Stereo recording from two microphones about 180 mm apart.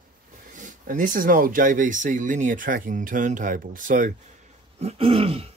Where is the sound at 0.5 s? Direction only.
45° right (ahead or behind).